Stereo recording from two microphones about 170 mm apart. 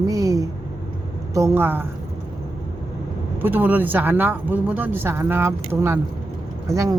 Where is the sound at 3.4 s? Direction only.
10° right (ahead or behind).